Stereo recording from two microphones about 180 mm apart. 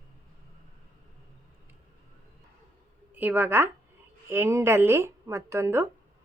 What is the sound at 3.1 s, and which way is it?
A woman's voice, 10° right (ahead or behind).